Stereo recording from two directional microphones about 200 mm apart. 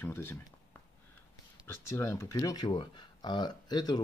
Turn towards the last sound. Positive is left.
turn(degrees=20)  # may be behind; listen again after turning